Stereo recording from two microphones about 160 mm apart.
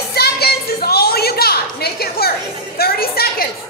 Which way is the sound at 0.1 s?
75° left (ahead or behind).